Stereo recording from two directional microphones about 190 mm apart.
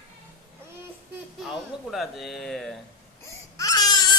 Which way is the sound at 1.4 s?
Centre (ahead or behind).